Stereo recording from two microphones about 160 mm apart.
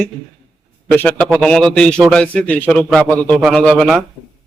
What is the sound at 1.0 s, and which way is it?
A man's voice, 10° left (ahead or behind).